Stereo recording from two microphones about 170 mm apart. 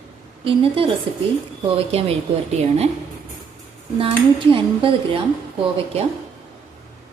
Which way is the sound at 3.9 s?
30° right (ahead or behind).